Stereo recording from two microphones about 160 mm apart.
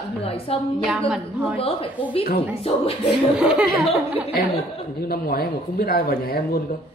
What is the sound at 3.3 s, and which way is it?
Speech, 5° right (ahead or behind).